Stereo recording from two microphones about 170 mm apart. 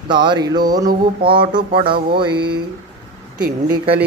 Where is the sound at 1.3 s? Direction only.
30° right (ahead or behind).